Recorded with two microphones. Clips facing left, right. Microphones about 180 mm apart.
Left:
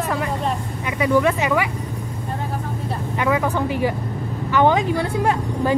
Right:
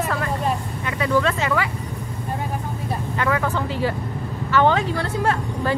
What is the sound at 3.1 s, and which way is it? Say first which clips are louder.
A woman's voice: left 3 dB; 15° left (ahead or behind).